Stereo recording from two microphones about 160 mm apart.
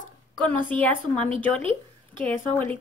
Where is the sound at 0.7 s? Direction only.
10° left (ahead or behind).